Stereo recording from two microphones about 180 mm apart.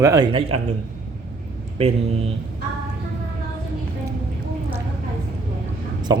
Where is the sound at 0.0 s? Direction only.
20° right (ahead or behind).